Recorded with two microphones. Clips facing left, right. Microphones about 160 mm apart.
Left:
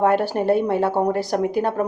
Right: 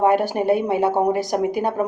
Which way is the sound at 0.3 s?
15° right (ahead or behind).